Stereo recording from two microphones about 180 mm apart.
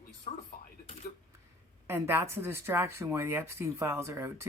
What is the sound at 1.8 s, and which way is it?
Speech, 15° right (ahead or behind).